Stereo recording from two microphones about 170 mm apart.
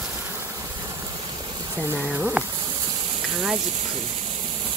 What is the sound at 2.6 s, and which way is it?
Insect, 30° right (ahead or behind).